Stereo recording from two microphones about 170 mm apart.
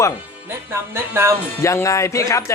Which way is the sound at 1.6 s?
15° left (ahead or behind).